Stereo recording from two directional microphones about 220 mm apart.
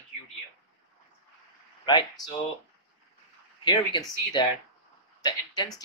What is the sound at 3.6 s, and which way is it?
Speech, 20° left (ahead or behind).